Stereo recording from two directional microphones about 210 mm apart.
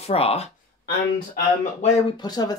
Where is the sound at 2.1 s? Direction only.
20° left (ahead or behind).